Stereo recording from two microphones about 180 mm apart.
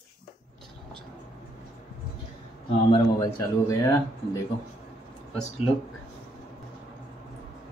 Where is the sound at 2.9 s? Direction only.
20° left (ahead or behind).